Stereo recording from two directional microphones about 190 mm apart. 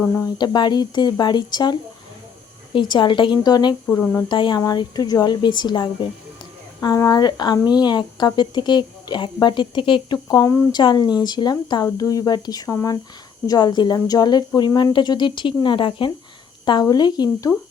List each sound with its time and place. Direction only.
0.0 s a woman's voice: 15° left (ahead or behind)
2.7 s a woman's voice: 25° left (ahead or behind)